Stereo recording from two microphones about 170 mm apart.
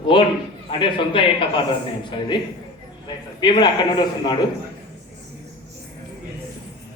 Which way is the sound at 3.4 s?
25° left (ahead or behind).